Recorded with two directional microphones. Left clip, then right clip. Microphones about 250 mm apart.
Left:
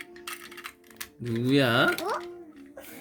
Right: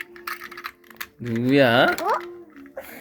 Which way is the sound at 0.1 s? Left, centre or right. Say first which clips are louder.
Right 7 dB; centre.